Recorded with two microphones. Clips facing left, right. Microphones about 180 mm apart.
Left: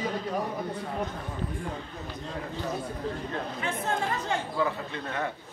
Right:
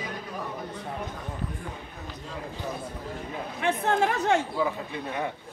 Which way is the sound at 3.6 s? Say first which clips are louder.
Right 8 dB; 70° right (ahead or behind).